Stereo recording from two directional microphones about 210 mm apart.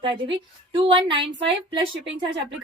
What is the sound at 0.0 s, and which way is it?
A woman's voice, 25° right (ahead or behind).